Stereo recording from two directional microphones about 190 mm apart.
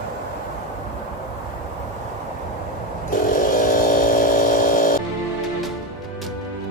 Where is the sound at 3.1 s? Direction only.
45° left (ahead or behind).